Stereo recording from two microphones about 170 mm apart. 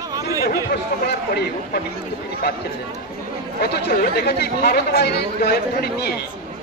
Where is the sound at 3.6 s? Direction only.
75° left (ahead or behind).